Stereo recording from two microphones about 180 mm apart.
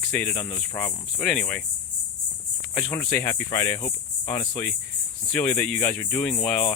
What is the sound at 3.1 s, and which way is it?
Speech, 10° left (ahead or behind).